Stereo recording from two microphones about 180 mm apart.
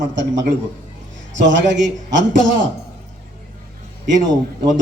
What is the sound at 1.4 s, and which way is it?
Speech, 90° right.